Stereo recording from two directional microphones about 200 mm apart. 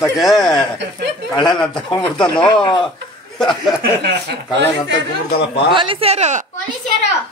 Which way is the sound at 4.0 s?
55° right (ahead or behind).